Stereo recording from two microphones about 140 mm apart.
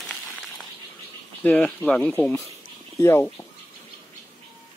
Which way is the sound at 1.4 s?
10° left (ahead or behind).